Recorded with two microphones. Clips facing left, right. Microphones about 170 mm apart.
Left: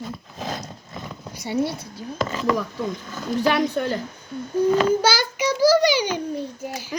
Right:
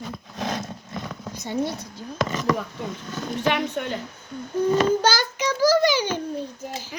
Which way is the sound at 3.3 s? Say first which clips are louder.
Left 4 dB; 35° left (ahead or behind).